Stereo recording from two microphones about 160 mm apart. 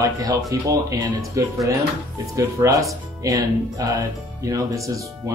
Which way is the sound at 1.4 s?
20° right (ahead or behind).